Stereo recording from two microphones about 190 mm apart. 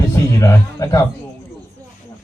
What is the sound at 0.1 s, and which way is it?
Music, 15° left (ahead or behind).